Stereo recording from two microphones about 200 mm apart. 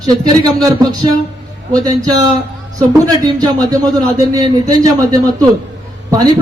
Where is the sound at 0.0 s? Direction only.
20° right (ahead or behind).